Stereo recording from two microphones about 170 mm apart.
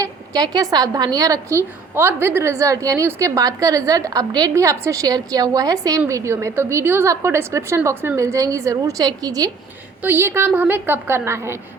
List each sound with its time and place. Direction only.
0.0 s a woman's voice: 20° right (ahead or behind)